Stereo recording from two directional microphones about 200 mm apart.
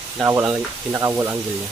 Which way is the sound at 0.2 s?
15° right (ahead or behind).